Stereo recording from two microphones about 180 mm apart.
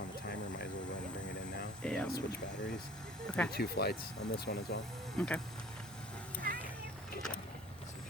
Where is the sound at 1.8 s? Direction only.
5° left (ahead or behind).